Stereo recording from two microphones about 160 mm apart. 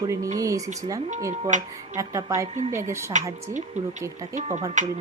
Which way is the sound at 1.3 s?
50° right (ahead or behind).